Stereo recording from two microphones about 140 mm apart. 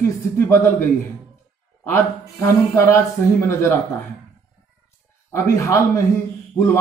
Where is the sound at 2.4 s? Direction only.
20° left (ahead or behind).